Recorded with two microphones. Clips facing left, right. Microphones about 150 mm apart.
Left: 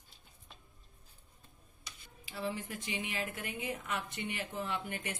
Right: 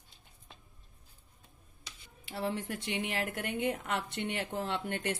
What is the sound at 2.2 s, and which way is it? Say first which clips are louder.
Speech: right 4 dB; 65° right (ahead or behind).